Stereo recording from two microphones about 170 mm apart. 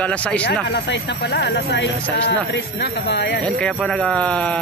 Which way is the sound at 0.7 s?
85° left.